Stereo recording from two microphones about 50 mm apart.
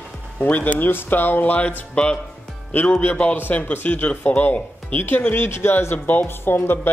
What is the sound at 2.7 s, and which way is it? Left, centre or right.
Speech, left.